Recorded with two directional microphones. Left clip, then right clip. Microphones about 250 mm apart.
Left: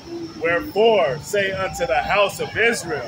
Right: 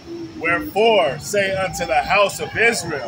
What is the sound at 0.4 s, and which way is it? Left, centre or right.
Speech, centre.